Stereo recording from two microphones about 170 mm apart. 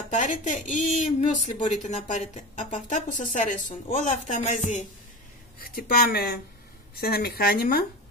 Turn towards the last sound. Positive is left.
turn(degrees=65)  # may be behind; listen again after turning